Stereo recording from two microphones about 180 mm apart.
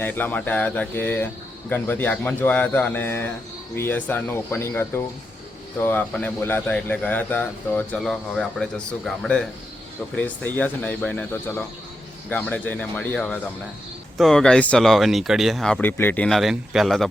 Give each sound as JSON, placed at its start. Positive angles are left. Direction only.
{"t": 0.0, "sound": "a man's voice", "side_deg": 10}